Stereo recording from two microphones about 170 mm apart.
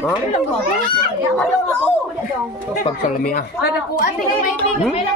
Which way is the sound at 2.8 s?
55° left (ahead or behind).